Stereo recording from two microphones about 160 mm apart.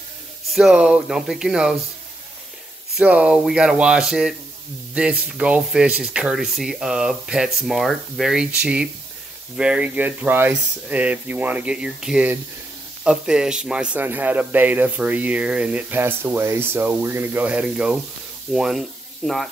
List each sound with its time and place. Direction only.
0.5 s speech: centre (ahead or behind)
3.0 s speech: 5° right (ahead or behind)
5.4 s speech: 5° right (ahead or behind)